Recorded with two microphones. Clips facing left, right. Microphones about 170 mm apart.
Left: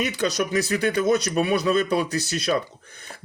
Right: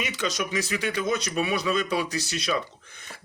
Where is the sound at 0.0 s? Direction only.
40° left (ahead or behind).